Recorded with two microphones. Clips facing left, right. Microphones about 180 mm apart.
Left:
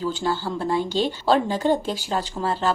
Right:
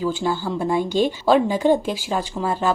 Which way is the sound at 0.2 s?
15° right (ahead or behind).